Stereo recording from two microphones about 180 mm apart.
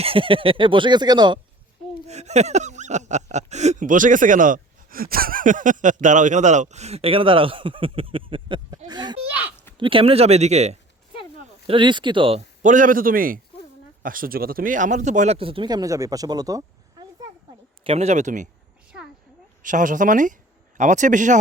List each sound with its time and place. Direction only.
0.0 s speech: 30° right (ahead or behind)
2.0 s speech: 40° right (ahead or behind)
11.6 s speech: 30° right (ahead or behind)
12.6 s a man's voice: 45° right (ahead or behind); by 17.2 s 20° right (ahead or behind)
17.8 s speech: 35° right (ahead or behind)
19.6 s speech: 45° right (ahead or behind)